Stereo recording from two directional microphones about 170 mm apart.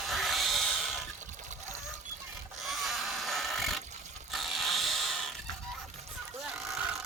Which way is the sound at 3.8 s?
45° right (ahead or behind).